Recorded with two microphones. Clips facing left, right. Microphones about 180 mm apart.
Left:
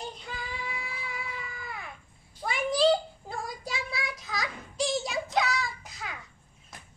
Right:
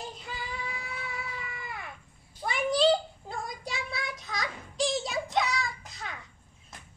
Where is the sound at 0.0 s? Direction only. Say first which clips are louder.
Left 1 dB; centre (ahead or behind).